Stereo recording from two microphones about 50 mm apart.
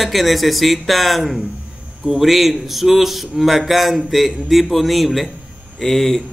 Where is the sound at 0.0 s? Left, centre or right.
Centre.